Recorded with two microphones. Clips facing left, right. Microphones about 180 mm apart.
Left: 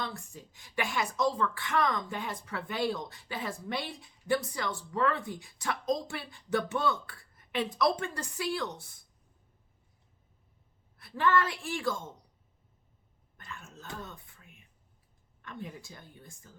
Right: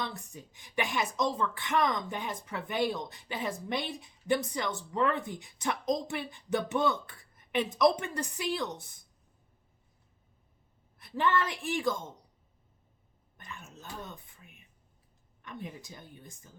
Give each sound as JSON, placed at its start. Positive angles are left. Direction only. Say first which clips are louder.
{"t": 0.0, "sound": "a woman's voice", "louder": "right 1 dB", "side_deg": -20}
{"t": 10.9, "sound": "a woman's voice", "louder": "left 1 dB", "side_deg": -20}
{"t": 13.3, "sound": "cough", "louder": "even", "side_deg": -20}
{"t": 14.0, "sound": "a woman's voice", "louder": "right 1 dB", "side_deg": -20}